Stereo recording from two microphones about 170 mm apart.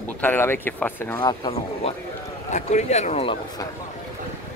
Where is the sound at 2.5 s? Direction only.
40° left (ahead or behind).